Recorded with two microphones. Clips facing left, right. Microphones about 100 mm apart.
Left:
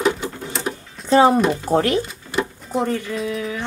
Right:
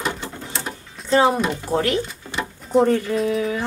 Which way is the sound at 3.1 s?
Centre (ahead or behind).